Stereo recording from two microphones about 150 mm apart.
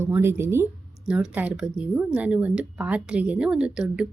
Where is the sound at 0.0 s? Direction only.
15° right (ahead or behind).